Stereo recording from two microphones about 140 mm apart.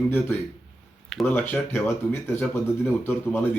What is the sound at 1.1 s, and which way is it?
Speech, centre (ahead or behind).